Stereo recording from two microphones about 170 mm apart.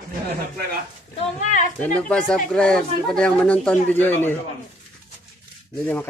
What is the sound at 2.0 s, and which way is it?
A man's voice, 5° left (ahead or behind).